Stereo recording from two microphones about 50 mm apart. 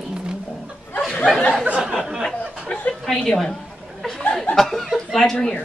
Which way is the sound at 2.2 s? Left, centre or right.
Centre.